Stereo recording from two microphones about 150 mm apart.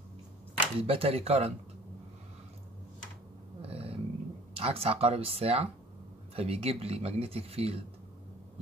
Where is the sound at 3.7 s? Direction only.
40° right (ahead or behind).